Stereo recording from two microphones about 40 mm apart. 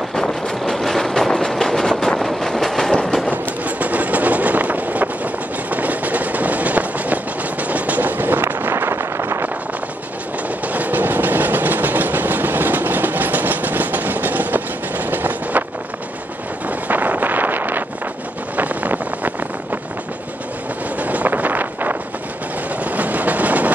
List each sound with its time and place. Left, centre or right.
0.1 s train: centre
2.1 s vehicle: centre
2.9 s train: left
3.3 s vehicle: right
10.7 s train: right
16.8 s wind noise: right
18.6 s vehicle: right
21.0 s wind noise: right
22.8 s train: right